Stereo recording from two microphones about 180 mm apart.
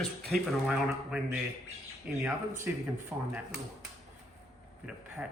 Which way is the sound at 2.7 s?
10° right (ahead or behind).